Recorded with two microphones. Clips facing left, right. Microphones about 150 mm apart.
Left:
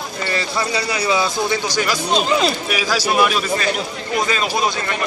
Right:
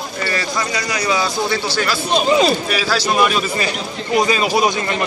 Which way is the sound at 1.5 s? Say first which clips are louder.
Even; 15° left (ahead or behind).